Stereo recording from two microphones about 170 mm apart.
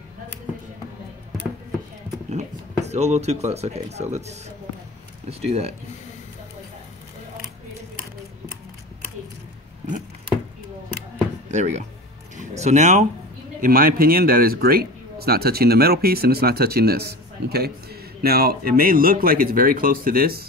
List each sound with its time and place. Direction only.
2.3 s speech: 40° right (ahead or behind)
11.5 s speech: 45° right (ahead or behind)
12.4 s a sound: 40° right (ahead or behind)
13.6 s speech: 60° right (ahead or behind)